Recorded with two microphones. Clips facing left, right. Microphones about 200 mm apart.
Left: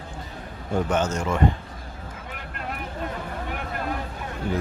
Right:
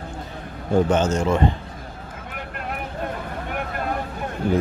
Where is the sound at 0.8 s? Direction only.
25° right (ahead or behind).